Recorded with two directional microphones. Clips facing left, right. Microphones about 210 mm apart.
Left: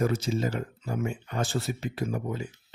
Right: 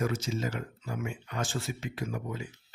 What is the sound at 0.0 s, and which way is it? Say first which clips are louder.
Speech: left 4 dB; 35° left (ahead or behind).